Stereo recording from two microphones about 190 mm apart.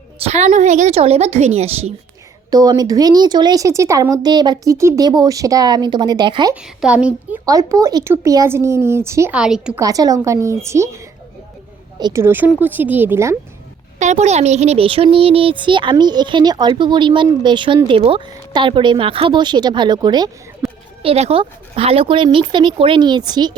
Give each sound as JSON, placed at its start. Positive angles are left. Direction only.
{"t": 0.2, "sound": "a woman's voice", "side_deg": -35}
{"t": 2.5, "sound": "speech", "side_deg": -20}
{"t": 6.6, "sound": "speech", "side_deg": -5}
{"t": 7.4, "sound": "speech", "side_deg": -20}
{"t": 9.8, "sound": "speech", "side_deg": -20}
{"t": 14.0, "sound": "speech", "side_deg": -40}
{"t": 20.6, "sound": "a woman's voice", "side_deg": 0}
{"t": 21.0, "sound": "speech", "side_deg": -30}